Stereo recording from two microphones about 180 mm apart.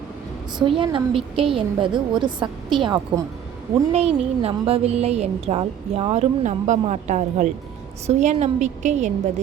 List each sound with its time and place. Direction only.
0.6 s a woman's voice: 25° right (ahead or behind)